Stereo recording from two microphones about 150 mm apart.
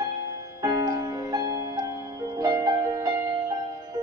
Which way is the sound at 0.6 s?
25° right (ahead or behind).